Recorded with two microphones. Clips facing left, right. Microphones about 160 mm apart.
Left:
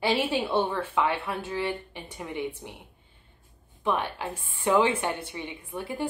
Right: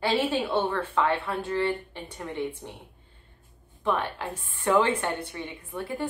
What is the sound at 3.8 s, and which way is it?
A woman's voice, 15° left (ahead or behind).